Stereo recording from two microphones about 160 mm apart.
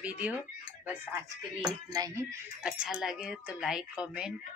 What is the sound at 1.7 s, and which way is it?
Dishes, 25° right (ahead or behind).